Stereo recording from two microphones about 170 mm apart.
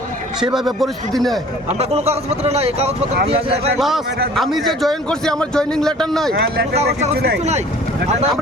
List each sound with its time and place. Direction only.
0.3 s a man's voice: centre (ahead or behind)
1.8 s speech: 40° right (ahead or behind)
3.8 s a man's voice: centre (ahead or behind)